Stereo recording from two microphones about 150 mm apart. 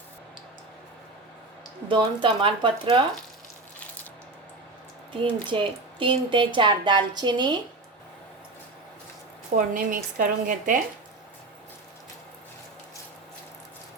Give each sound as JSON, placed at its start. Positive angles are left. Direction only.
{"t": 1.9, "sound": "speech", "side_deg": -35}
{"t": 5.1, "sound": "speech", "side_deg": -35}
{"t": 9.6, "sound": "speech", "side_deg": -65}